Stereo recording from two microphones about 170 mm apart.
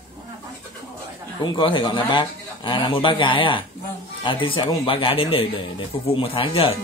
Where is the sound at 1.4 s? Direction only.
30° left (ahead or behind).